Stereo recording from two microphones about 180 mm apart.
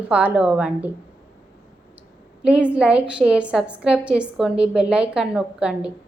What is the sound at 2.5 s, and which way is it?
A woman's voice, 5° right (ahead or behind).